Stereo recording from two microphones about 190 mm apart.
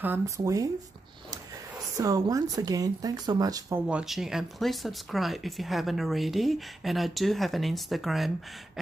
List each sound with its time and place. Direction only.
0.0 s speech: 15° right (ahead or behind)
2.0 s speech: 20° right (ahead or behind)
3.8 s speech: 5° right (ahead or behind)